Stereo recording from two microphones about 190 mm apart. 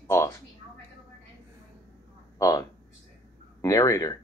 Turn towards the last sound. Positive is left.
turn(degrees=15)  # may be behind; listen again after turning